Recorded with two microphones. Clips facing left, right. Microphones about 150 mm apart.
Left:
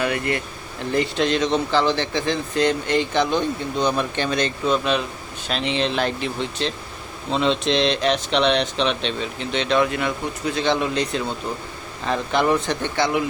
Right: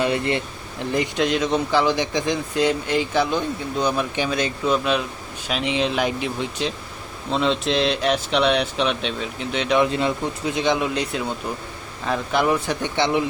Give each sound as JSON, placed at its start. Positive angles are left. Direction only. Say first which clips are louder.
{"t": 0.0, "sound": "speech", "louder": "right 2 dB", "side_deg": -25}
{"t": 0.9, "sound": "speech", "louder": "left 1 dB", "side_deg": -15}
{"t": 9.7, "sound": "speech", "louder": "right 2 dB", "side_deg": -25}